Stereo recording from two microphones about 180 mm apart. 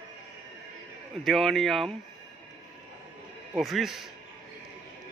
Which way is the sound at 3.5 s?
Centre (ahead or behind).